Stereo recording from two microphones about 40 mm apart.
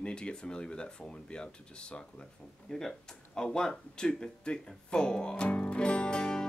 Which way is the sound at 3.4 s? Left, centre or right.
Centre.